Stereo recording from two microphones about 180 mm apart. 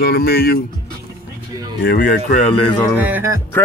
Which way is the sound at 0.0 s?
60° left (ahead or behind).